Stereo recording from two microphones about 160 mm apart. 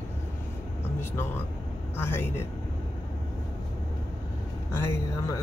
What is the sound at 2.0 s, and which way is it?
Speech, 15° left (ahead or behind).